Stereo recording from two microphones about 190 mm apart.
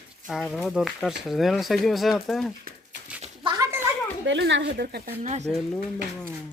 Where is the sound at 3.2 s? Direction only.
25° right (ahead or behind).